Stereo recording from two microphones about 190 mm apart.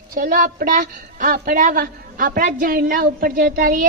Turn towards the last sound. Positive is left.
turn(degrees=-45)  # may be behind; listen again after turning